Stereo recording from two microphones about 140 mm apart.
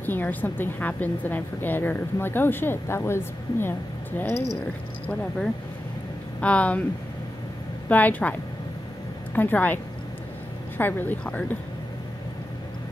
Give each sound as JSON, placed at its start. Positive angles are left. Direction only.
{"t": 0.0, "sound": "a woman's voice", "side_deg": 15}
{"t": 6.4, "sound": "a woman's voice", "side_deg": 10}
{"t": 7.9, "sound": "a woman's voice", "side_deg": 10}
{"t": 10.8, "sound": "a woman's voice", "side_deg": 15}